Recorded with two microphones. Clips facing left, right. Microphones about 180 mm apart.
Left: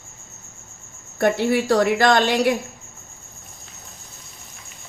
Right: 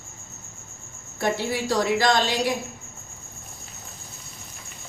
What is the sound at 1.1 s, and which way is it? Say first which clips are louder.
A woman's voice: left 7 dB; 60° left (ahead or behind).